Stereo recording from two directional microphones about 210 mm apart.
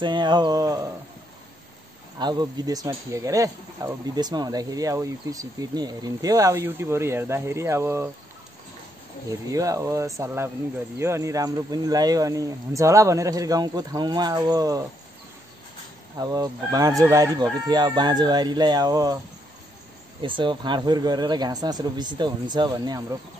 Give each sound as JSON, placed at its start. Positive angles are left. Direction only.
{"t": 0.0, "sound": "speech", "side_deg": -20}
{"t": 2.1, "sound": "speech", "side_deg": -20}
{"t": 9.3, "sound": "speech", "side_deg": -15}
{"t": 16.2, "sound": "speech", "side_deg": -15}
{"t": 20.2, "sound": "speech", "side_deg": -25}